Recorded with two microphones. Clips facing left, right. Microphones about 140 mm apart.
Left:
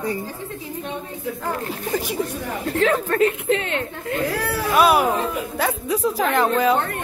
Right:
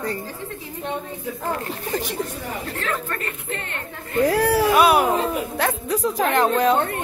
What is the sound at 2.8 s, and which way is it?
A woman's voice, 80° left.